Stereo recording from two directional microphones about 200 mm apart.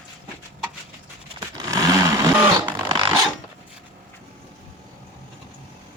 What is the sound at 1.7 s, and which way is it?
Vehicle, 15° right (ahead or behind).